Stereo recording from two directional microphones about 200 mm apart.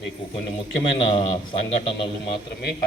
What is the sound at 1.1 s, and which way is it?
A man's voice, 25° left (ahead or behind).